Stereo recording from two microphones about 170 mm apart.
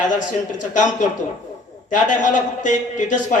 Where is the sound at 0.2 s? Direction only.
50° left (ahead or behind).